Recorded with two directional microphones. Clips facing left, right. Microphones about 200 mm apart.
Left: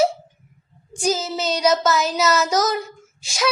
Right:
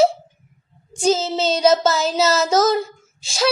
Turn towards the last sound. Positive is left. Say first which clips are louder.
# right 3 dB
turn(degrees=-30)  # may be behind; listen again after turning